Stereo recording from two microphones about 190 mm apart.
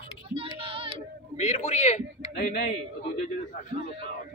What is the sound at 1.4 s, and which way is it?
Speech, 35° left (ahead or behind).